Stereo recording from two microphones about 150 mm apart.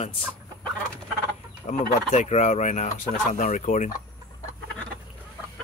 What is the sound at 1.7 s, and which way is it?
Speech, 50° left (ahead or behind).